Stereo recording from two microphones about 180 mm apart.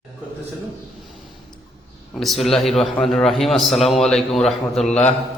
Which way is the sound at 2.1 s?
Centre (ahead or behind).